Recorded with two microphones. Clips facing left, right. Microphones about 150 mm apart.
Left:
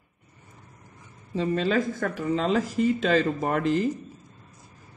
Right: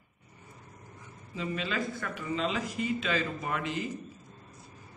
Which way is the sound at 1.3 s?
35° left (ahead or behind).